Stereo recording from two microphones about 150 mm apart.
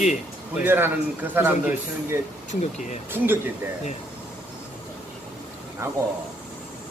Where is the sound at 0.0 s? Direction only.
55° left (ahead or behind).